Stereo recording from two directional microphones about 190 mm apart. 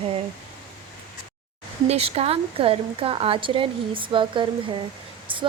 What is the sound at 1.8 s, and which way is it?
Speech, 35° right (ahead or behind).